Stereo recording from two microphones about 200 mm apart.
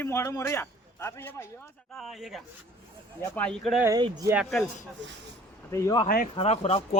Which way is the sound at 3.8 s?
20° right (ahead or behind).